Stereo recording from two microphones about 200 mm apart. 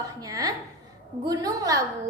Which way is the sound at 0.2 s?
20° right (ahead or behind).